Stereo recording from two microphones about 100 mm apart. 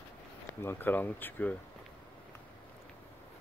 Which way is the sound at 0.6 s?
20° left (ahead or behind).